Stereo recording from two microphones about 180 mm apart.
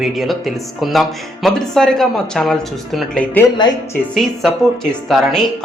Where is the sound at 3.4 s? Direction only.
25° left (ahead or behind).